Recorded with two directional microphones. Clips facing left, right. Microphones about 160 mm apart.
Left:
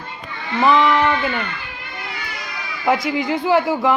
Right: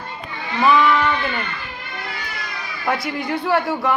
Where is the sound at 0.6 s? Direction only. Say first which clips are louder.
Left 1 dB; 20° left (ahead or behind).